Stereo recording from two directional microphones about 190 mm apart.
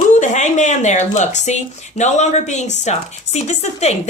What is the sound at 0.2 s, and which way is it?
A woman's voice, 40° left (ahead or behind).